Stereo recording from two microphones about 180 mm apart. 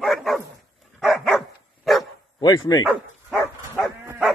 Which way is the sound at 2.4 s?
20° left (ahead or behind).